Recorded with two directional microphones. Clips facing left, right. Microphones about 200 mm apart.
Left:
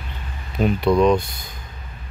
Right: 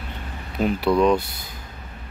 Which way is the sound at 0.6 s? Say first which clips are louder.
Left 2 dB; 5° right (ahead or behind).